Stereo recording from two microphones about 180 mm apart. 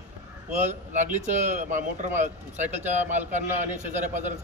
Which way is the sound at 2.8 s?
10° right (ahead or behind).